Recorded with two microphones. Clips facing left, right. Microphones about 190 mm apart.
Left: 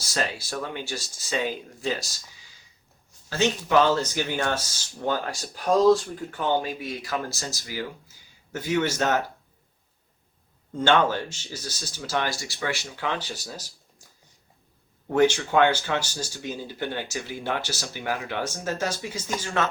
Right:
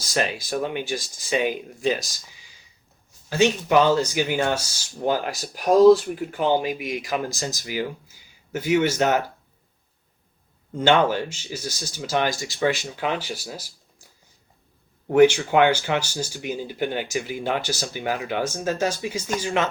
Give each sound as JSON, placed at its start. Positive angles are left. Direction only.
{"t": 0.1, "sound": "speech", "side_deg": -15}
{"t": 3.2, "sound": "speech", "side_deg": -15}
{"t": 10.8, "sound": "speech", "side_deg": -15}
{"t": 15.1, "sound": "speech", "side_deg": -15}